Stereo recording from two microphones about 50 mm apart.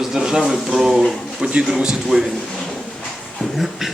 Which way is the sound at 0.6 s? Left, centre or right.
Centre.